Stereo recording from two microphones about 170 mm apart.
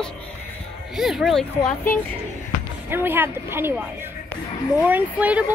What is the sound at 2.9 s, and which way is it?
Speech, 10° right (ahead or behind).